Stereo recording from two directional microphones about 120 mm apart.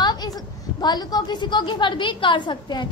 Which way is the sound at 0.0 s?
35° left (ahead or behind).